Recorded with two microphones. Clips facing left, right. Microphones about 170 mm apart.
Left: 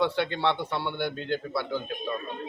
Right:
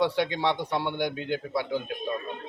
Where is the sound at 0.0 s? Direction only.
10° right (ahead or behind).